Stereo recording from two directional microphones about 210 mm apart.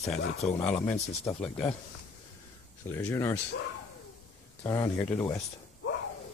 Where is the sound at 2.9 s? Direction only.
10° left (ahead or behind).